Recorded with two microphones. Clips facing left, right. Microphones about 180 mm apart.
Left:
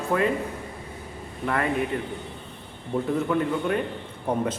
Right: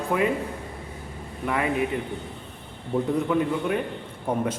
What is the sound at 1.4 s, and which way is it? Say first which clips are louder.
Speech: even; 10° right (ahead or behind).